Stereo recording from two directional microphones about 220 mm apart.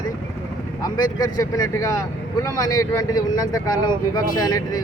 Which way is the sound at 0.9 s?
20° left (ahead or behind).